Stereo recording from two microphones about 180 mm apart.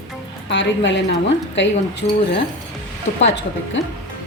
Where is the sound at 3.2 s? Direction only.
80° left.